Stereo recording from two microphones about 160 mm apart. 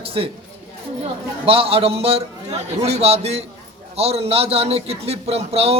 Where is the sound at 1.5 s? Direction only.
35° right (ahead or behind).